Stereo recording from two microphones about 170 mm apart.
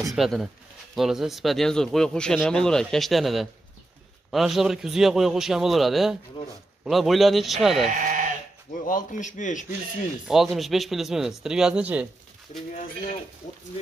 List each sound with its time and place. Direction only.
0.1 s speech: centre (ahead or behind)
7.9 s speech: 50° right (ahead or behind)
8.7 s a man's voice: 50° left (ahead or behind)
10.2 s speech: centre (ahead or behind)